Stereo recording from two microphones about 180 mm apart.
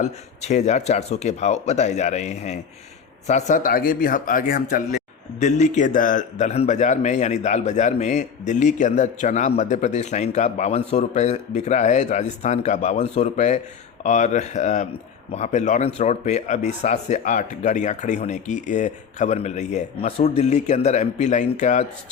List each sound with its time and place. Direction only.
0.0 s a man's voice: 40° left (ahead or behind)